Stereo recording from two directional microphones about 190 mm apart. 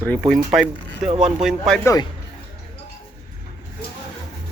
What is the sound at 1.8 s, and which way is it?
Speech, 15° left (ahead or behind).